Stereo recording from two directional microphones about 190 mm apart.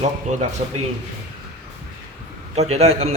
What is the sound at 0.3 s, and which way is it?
Speech, 40° right (ahead or behind).